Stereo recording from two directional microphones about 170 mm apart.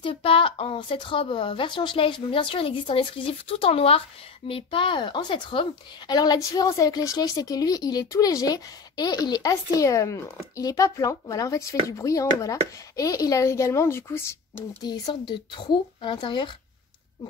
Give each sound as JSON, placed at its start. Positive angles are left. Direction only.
{"t": 0.0, "sound": "a woman's voice", "side_deg": 30}